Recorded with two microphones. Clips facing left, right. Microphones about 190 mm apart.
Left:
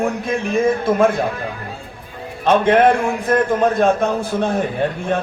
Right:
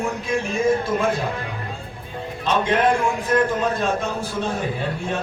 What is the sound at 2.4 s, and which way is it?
A man's voice, 55° left (ahead or behind).